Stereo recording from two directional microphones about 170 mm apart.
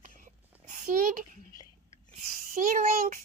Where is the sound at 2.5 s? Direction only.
45° right (ahead or behind).